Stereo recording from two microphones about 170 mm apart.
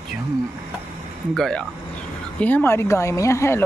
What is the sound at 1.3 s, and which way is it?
Speech, 5° left (ahead or behind).